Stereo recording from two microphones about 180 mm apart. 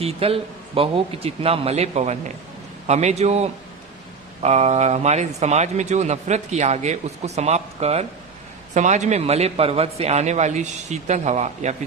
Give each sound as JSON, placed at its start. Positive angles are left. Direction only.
{"t": 0.0, "sound": "a man's voice", "side_deg": -30}